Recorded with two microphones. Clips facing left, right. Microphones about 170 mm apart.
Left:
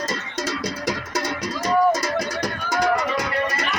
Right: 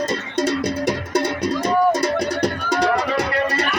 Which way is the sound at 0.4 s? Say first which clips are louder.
Right 5 dB; 60° right (ahead or behind).